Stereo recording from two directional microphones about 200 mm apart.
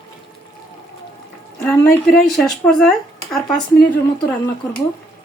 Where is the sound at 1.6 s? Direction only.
Centre (ahead or behind).